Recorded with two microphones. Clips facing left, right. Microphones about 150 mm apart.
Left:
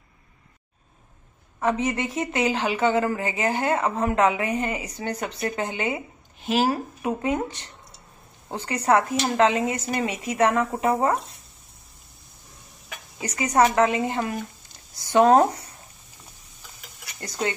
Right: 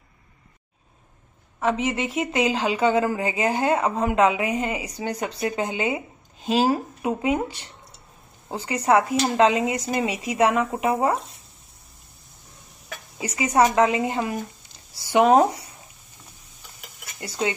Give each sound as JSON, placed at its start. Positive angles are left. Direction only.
{"t": 1.9, "sound": "speech", "side_deg": -25}
{"t": 4.2, "sound": "speech", "side_deg": -25}
{"t": 4.5, "sound": "speech", "side_deg": -10}
{"t": 13.2, "sound": "speech", "side_deg": -10}
{"t": 17.2, "sound": "speech", "side_deg": -10}